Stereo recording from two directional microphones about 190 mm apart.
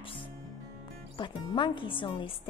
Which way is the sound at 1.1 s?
25° left (ahead or behind).